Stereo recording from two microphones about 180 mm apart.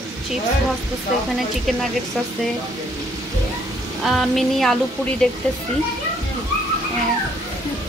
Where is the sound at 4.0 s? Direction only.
Centre (ahead or behind).